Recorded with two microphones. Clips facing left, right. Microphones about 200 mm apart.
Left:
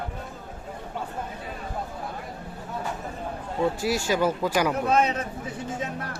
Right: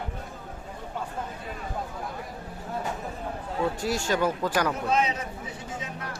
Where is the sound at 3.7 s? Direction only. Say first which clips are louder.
Left 2 dB; 10° left (ahead or behind).